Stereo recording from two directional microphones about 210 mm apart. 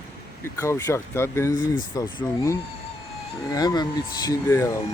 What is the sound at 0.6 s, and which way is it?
Speech, 15° left (ahead or behind).